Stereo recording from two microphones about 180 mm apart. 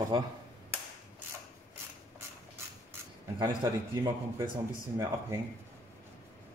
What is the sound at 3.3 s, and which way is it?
Speech, 20° right (ahead or behind).